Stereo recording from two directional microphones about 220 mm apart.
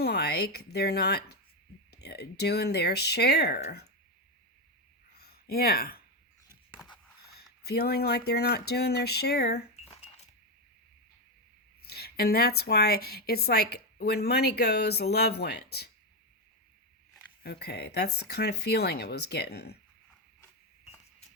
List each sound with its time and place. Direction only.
0.0 s speech: 45° left (ahead or behind)
5.1 s a sound: 45° left (ahead or behind)
7.3 s speech: 45° left (ahead or behind)
11.8 s speech: 45° left (ahead or behind)
17.4 s speech: 45° left (ahead or behind)